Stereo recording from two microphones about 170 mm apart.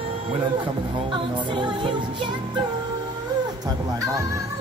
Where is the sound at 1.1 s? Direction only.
30° right (ahead or behind).